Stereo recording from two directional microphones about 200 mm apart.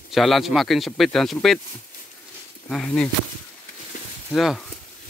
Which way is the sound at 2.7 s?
5° left (ahead or behind).